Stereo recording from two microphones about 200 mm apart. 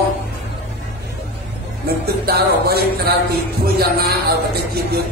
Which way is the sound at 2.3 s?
50° right (ahead or behind).